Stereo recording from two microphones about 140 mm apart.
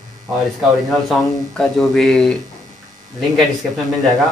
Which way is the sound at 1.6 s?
5° left (ahead or behind).